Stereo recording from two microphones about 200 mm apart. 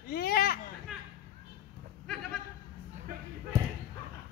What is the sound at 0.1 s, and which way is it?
Children playing, 50° left (ahead or behind).